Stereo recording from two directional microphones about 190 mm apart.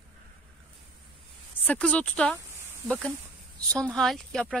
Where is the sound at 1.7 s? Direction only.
5° left (ahead or behind).